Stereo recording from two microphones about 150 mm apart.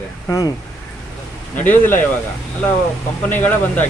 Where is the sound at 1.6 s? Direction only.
10° left (ahead or behind).